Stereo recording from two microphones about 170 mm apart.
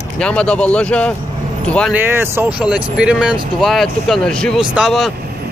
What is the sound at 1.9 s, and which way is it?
Speech, 15° right (ahead or behind).